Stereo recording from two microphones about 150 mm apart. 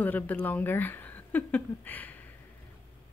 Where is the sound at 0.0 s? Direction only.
10° left (ahead or behind).